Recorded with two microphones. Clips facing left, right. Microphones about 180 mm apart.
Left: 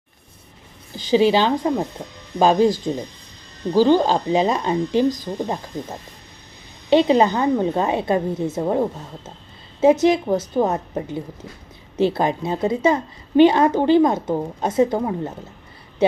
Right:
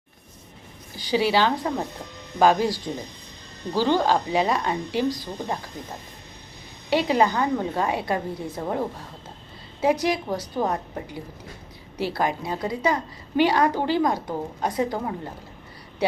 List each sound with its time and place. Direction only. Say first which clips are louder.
0.9 s a woman's voice: left 5 dB; 20° left (ahead or behind)
5.0 s speech: left 5 dB; 45° left (ahead or behind)
6.9 s a woman's voice: left 6 dB; 25° left (ahead or behind)